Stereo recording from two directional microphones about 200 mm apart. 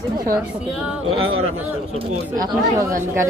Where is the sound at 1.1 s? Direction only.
90° right.